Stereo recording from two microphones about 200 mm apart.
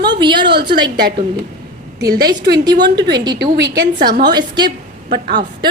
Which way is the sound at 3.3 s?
55° right (ahead or behind).